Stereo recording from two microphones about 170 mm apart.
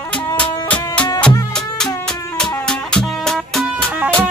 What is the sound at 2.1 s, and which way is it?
Music, 5° left (ahead or behind).